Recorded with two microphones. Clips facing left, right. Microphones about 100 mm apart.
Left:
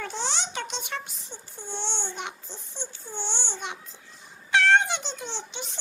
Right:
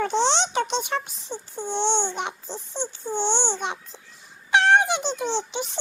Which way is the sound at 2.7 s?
55° right (ahead or behind).